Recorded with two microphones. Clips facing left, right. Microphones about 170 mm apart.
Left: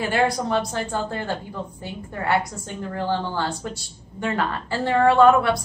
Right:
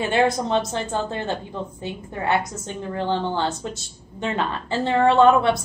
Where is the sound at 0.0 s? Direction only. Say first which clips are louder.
Right 2 dB; 25° right (ahead or behind).